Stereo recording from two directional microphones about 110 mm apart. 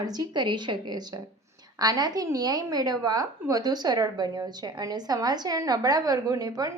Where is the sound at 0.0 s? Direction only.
35° right (ahead or behind).